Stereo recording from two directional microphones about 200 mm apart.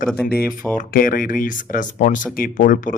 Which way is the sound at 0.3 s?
10° left (ahead or behind).